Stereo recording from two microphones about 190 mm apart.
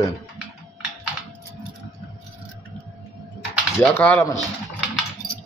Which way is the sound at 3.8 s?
5° left (ahead or behind).